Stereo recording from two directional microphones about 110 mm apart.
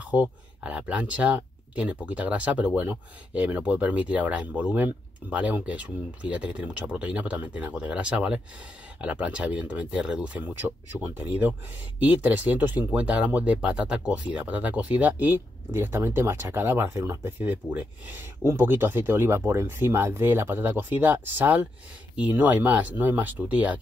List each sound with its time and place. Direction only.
0.0 s speech: 10° right (ahead or behind)
12.0 s speech: 15° right (ahead or behind)